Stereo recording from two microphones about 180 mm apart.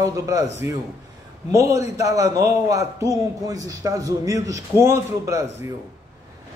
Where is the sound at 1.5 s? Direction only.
15° right (ahead or behind).